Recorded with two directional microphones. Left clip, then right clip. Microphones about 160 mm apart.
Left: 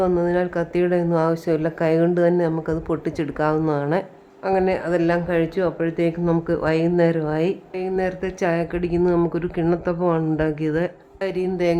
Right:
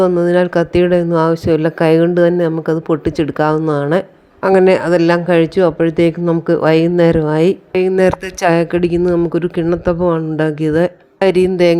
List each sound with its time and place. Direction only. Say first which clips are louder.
0.2 s speech: right 9 dB; 35° right (ahead or behind)
4.4 s speech: right 10 dB; 45° right (ahead or behind)
7.7 s speech: right 11 dB; 45° right (ahead or behind); by 10.9 s 25° right (ahead or behind)
11.2 s speech: right 12 dB; 45° right (ahead or behind)